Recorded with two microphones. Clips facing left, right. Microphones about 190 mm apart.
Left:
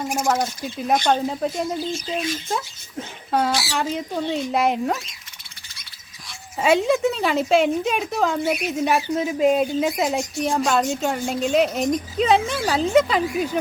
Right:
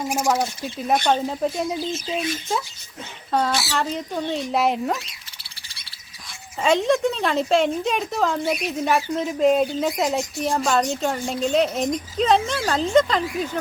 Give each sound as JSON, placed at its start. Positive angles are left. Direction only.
{"t": 0.0, "sound": "speech", "side_deg": -10}
{"t": 1.4, "sound": "speech", "side_deg": 0}
{"t": 3.3, "sound": "speech", "side_deg": 5}
{"t": 5.0, "sound": "bird", "side_deg": -30}
{"t": 6.6, "sound": "speech", "side_deg": 5}